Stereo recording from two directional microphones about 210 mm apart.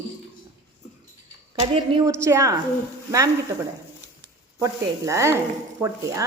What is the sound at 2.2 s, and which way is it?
Speech, 15° right (ahead or behind).